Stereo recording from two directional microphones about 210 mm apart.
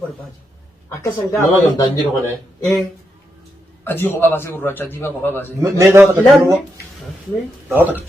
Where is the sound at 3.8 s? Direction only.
10° left (ahead or behind).